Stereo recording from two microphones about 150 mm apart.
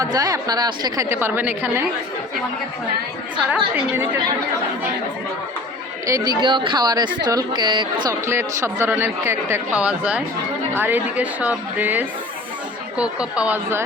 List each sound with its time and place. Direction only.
0.0 s a woman's voice: 25° right (ahead or behind)
3.8 s a man's voice: 15° right (ahead or behind)
6.1 s a woman's voice: 20° right (ahead or behind)
8.3 s a man's voice: 15° right (ahead or behind)